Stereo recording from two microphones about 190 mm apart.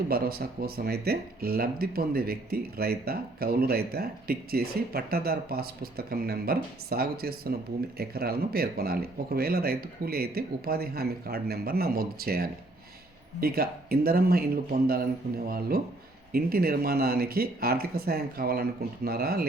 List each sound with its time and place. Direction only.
0.1 s speech: 55° right (ahead or behind)